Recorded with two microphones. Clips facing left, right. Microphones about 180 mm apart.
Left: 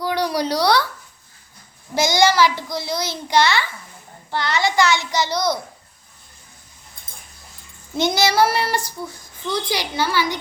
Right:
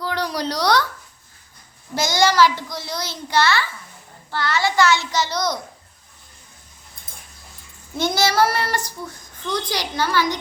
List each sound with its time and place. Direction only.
0.0 s speech: 10° left (ahead or behind)
2.0 s a child's voice: 15° left (ahead or behind)
8.0 s a child's voice: 15° left (ahead or behind)